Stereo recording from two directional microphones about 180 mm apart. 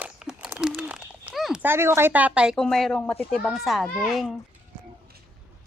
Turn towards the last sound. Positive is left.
turn(degrees=0)  # may be behind; listen again after turning